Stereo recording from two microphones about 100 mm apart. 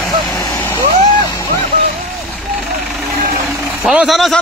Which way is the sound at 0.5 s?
25° left (ahead or behind).